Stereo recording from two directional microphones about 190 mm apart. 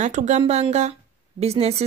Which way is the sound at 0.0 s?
40° right (ahead or behind).